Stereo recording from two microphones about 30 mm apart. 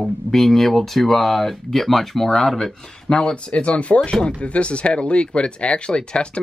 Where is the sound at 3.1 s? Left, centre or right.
Left.